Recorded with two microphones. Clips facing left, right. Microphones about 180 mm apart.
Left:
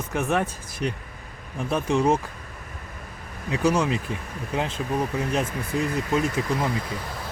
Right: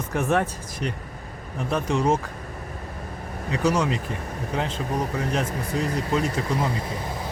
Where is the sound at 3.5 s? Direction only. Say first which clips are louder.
Left 1 dB; 10° left (ahead or behind).